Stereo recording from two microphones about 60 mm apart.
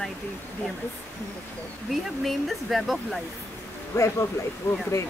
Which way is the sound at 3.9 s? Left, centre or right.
Left.